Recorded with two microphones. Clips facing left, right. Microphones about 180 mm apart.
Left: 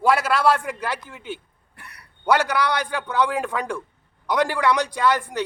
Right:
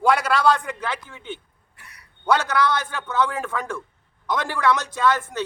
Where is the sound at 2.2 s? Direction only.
10° left (ahead or behind).